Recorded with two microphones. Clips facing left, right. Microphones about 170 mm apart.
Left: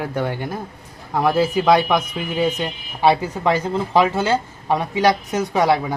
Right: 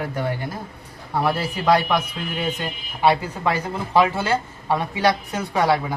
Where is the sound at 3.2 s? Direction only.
20° left (ahead or behind).